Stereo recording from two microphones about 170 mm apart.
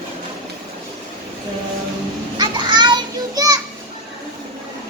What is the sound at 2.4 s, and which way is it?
Children playing, 25° right (ahead or behind).